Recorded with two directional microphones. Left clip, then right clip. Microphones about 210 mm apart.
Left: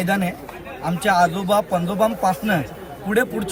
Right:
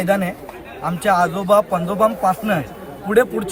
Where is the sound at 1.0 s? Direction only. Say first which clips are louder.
Right 1 dB; 10° left (ahead or behind).